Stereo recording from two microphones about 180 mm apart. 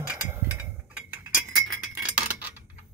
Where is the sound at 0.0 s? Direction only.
10° right (ahead or behind).